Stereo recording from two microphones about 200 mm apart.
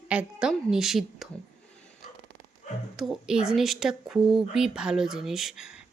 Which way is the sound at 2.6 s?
35° left (ahead or behind).